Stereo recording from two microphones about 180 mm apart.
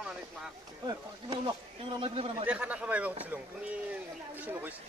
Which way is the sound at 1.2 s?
25° right (ahead or behind).